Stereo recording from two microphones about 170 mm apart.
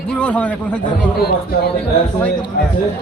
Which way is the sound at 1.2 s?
65° left (ahead or behind).